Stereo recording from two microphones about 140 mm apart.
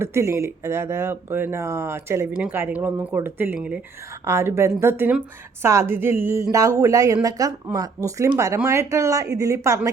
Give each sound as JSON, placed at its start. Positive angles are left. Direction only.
{"t": 0.0, "sound": "speech", "side_deg": -20}